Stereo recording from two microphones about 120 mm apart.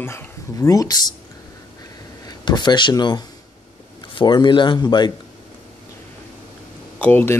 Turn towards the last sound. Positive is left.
turn(degrees=15)  # may be behind; listen again after turning